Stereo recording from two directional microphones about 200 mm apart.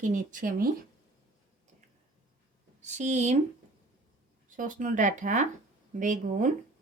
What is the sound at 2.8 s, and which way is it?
Speech, 35° right (ahead or behind).